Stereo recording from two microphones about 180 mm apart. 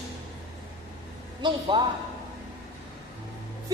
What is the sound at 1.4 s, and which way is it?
Speech, 25° right (ahead or behind).